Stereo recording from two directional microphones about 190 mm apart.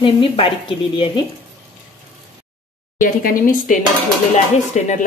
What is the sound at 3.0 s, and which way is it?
Speech, 45° left (ahead or behind).